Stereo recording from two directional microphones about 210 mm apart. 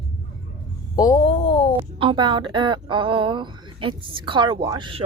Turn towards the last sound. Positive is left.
turn(degrees=-20)  # may be behind; listen again after turning